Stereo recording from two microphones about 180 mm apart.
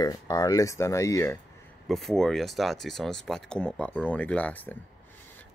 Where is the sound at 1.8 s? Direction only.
Centre (ahead or behind).